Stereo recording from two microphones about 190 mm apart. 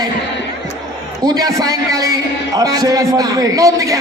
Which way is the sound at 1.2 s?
20° right (ahead or behind).